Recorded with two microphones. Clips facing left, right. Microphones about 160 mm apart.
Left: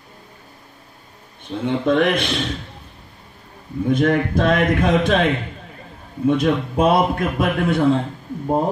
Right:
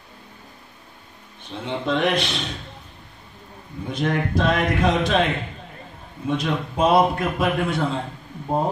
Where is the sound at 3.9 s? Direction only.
55° left (ahead or behind).